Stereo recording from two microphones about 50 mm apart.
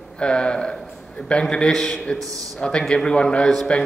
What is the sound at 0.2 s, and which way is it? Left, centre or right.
Speech, centre.